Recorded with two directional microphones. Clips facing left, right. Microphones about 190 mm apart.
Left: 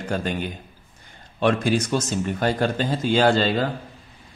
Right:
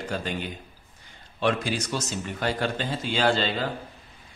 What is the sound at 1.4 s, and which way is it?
Speech, 50° left (ahead or behind).